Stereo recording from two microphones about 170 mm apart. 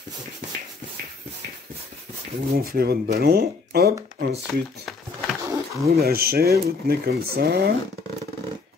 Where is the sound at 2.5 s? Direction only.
65° right (ahead or behind).